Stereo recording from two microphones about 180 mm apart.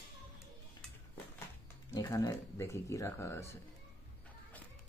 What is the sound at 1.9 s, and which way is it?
Speech, 20° left (ahead or behind).